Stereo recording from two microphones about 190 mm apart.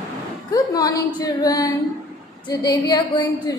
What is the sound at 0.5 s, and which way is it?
A woman's voice, 20° left (ahead or behind).